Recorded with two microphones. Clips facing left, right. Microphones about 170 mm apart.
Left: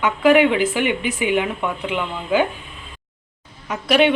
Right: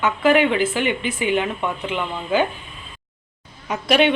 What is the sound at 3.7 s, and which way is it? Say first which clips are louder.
Speech: left 1 dB; 5° left (ahead or behind).